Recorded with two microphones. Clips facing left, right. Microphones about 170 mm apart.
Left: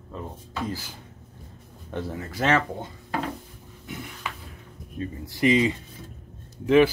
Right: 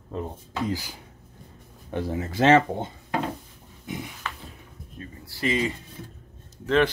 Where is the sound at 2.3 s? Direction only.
30° right (ahead or behind).